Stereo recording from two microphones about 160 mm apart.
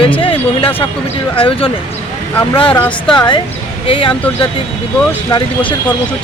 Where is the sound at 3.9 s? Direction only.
35° left (ahead or behind).